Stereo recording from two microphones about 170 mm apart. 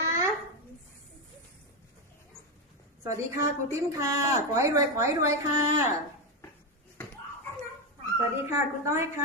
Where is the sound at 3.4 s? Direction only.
20° right (ahead or behind).